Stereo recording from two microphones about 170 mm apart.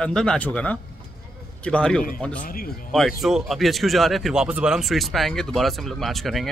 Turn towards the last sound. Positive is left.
turn(degrees=0)  # may be behind; listen again after turning